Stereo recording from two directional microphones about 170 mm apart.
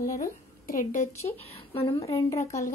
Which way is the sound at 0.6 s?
55° left (ahead or behind).